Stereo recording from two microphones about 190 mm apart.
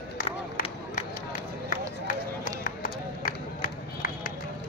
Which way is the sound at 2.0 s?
45° left (ahead or behind).